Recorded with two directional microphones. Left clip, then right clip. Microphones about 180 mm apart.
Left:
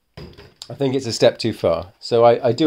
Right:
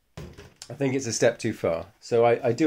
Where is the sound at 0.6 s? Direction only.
35° left (ahead or behind).